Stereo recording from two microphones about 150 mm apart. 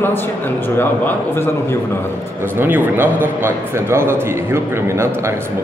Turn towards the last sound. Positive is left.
turn(degrees=-20)  # may be behind; listen again after turning